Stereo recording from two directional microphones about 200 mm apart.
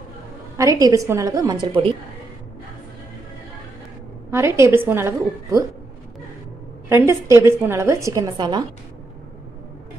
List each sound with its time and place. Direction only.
0.6 s a woman's voice: 15° right (ahead or behind)
4.3 s a woman's voice: 10° right (ahead or behind)
6.9 s a woman's voice: 15° right (ahead or behind)